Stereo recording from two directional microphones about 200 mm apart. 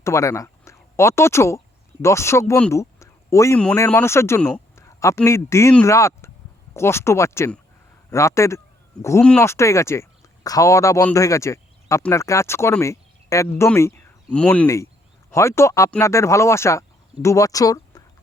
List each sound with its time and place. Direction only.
0.0 s speech: 15° left (ahead or behind)
2.7 s a sound: 15° left (ahead or behind)
3.6 s speech: 5° left (ahead or behind)